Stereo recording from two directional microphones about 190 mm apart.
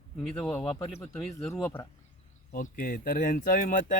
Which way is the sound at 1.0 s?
10° left (ahead or behind).